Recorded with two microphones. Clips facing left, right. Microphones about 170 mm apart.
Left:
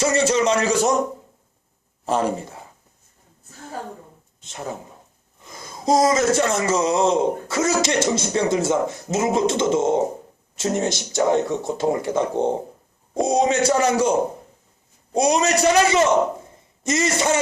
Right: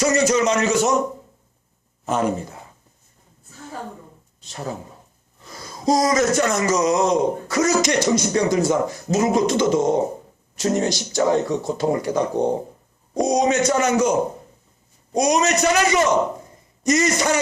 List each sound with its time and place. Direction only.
0.0 s a man's voice: 30° left (ahead or behind)
2.0 s a man's voice: 30° left (ahead or behind)
4.4 s a man's voice: 20° left (ahead or behind)